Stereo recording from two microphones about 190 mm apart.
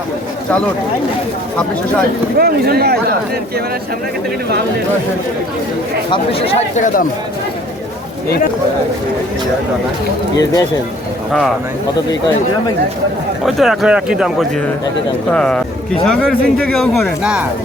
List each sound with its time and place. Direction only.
2.4 s speech: 55° right (ahead or behind)
10.3 s speech: 20° left (ahead or behind)
13.4 s speech: centre (ahead or behind)